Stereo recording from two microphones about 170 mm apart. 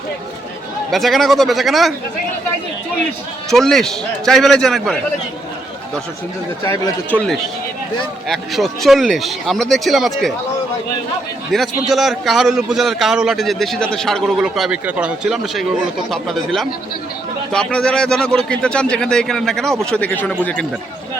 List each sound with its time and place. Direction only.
0.9 s a man's voice: centre (ahead or behind)
3.5 s a man's voice: centre (ahead or behind)
6.6 s speech: 20° left (ahead or behind)
7.1 s a man's voice: centre (ahead or behind)
11.5 s a man's voice: centre (ahead or behind)